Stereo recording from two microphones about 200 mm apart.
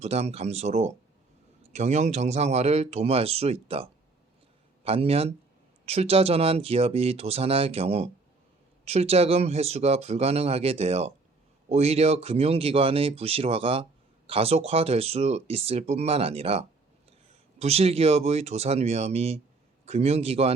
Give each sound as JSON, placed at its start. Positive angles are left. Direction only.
{"t": 0.0, "sound": "speech", "side_deg": -30}